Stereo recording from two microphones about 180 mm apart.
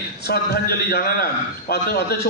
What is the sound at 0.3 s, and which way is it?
A man's voice, 60° left (ahead or behind).